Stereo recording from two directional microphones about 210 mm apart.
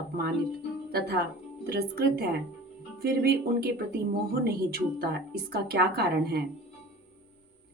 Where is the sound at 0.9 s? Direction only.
45° right (ahead or behind).